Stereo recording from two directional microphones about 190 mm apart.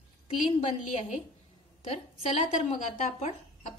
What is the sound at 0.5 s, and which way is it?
Speech, 35° left (ahead or behind).